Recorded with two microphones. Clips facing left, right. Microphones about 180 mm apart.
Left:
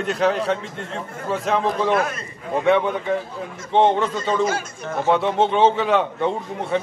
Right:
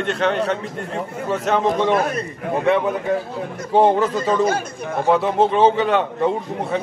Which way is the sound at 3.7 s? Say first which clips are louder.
Right 2 dB; 5° right (ahead or behind).